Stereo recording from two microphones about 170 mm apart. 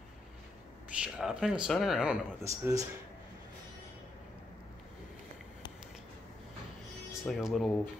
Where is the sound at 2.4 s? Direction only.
20° right (ahead or behind).